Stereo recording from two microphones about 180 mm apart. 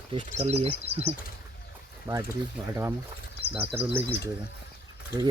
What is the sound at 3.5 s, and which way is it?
Speech, 10° right (ahead or behind).